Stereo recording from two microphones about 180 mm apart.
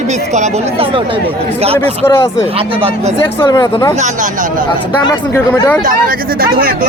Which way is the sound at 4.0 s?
45° right (ahead or behind).